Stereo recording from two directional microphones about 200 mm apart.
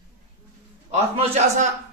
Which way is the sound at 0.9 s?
30° right (ahead or behind).